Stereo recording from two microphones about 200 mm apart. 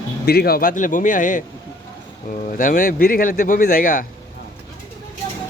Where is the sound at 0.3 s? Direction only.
50° left (ahead or behind).